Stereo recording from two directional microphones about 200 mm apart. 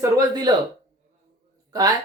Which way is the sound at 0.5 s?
20° right (ahead or behind).